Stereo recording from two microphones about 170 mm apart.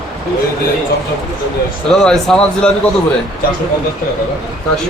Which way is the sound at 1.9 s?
5° left (ahead or behind).